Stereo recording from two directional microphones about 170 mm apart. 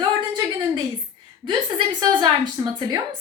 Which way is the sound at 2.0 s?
25° right (ahead or behind).